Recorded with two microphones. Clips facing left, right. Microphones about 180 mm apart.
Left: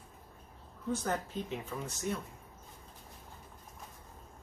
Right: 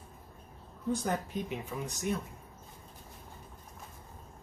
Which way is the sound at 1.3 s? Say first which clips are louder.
Right 2 dB; 15° right (ahead or behind).